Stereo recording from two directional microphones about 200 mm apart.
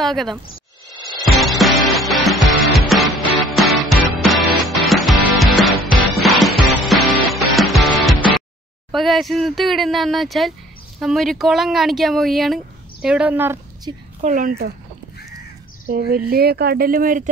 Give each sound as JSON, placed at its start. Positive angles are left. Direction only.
{"t": 0.0, "sound": "a woman's voice", "side_deg": 0}
{"t": 1.2, "sound": "music", "side_deg": 0}
{"t": 8.9, "sound": "speech", "side_deg": 0}
{"t": 13.9, "sound": "a woman's voice", "side_deg": -20}
{"t": 14.2, "sound": "a woman's voice", "side_deg": -40}
{"t": 15.9, "sound": "speech", "side_deg": -50}